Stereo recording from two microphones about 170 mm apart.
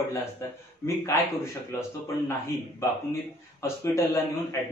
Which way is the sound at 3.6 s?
15° left (ahead or behind).